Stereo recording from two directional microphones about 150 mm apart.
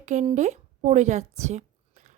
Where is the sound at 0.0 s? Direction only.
50° right (ahead or behind).